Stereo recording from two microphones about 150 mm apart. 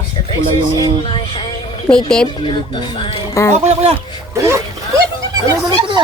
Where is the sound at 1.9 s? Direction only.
5° left (ahead or behind).